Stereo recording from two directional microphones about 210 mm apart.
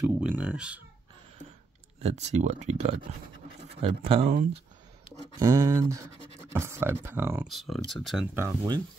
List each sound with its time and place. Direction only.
0.2 s speech: 5° right (ahead or behind)
2.0 s speech: 30° right (ahead or behind)
5.4 s speech: 15° right (ahead or behind)
7.4 s speech: centre (ahead or behind)
8.4 s speech: 15° right (ahead or behind)